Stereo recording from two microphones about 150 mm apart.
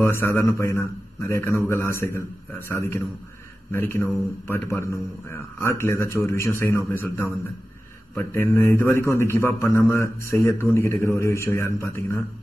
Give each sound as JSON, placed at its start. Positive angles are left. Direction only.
{"t": 0.0, "sound": "a man's voice", "side_deg": 15}